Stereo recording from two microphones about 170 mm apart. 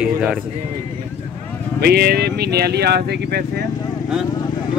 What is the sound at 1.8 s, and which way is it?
Speech, 65° right (ahead or behind).